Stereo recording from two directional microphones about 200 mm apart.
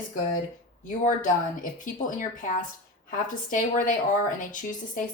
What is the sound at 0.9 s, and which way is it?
Speech, 40° left (ahead or behind).